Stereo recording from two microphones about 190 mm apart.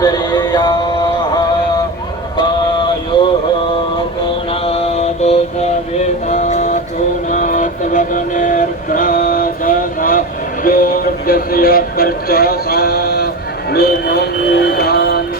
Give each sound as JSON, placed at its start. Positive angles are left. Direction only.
{"t": 0.0, "sound": "music", "side_deg": 20}
{"t": 2.4, "sound": "a sound", "side_deg": 25}
{"t": 4.6, "sound": "mantra", "side_deg": 35}
{"t": 7.3, "sound": "music", "side_deg": 40}